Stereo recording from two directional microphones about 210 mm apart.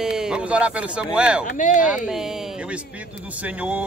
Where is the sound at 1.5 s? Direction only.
40° left (ahead or behind).